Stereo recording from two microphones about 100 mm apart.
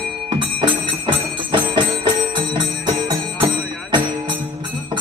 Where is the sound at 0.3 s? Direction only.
55° right (ahead or behind).